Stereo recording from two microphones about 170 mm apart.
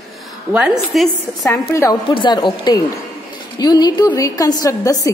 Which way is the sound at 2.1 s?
25° left (ahead or behind).